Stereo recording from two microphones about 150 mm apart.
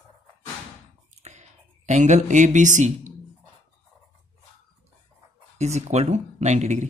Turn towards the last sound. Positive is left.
turn(degrees=-50)  # may be behind; listen again after turning